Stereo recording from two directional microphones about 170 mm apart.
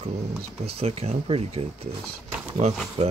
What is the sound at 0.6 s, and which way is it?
Speech, 35° right (ahead or behind).